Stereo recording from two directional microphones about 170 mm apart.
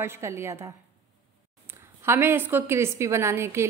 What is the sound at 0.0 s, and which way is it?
A woman's voice, 15° right (ahead or behind).